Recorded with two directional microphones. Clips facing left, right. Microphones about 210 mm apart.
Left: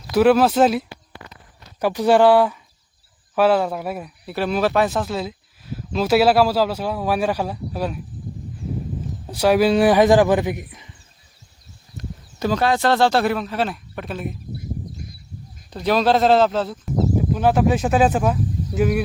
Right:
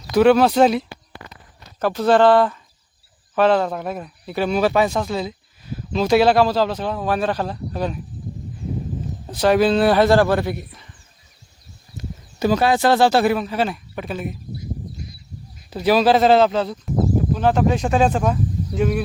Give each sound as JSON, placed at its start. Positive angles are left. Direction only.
{"t": 0.1, "sound": "speech", "side_deg": 5}
{"t": 1.8, "sound": "a man's voice", "side_deg": 15}
{"t": 9.2, "sound": "a man's voice", "side_deg": 10}
{"t": 11.9, "sound": "speech", "side_deg": -10}
{"t": 15.7, "sound": "speech", "side_deg": -5}